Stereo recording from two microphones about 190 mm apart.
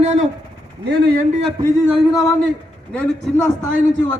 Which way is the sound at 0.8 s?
60° right (ahead or behind).